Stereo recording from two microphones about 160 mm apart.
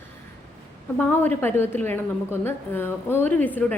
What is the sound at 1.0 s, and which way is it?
A woman's voice, 10° left (ahead or behind).